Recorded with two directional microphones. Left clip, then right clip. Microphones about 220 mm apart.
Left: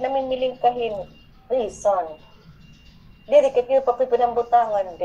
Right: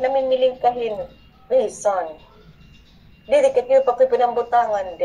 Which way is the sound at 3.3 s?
25° right (ahead or behind).